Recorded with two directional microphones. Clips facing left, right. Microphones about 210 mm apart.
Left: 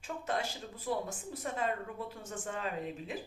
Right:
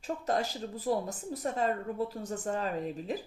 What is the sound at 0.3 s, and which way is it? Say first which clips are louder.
Speech: right 5 dB; 40° right (ahead or behind).